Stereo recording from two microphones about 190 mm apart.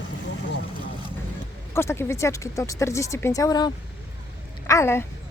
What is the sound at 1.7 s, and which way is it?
A woman's voice, 15° left (ahead or behind).